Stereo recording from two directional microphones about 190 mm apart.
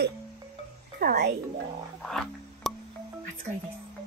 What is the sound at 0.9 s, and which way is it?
Speech, 55° right (ahead or behind).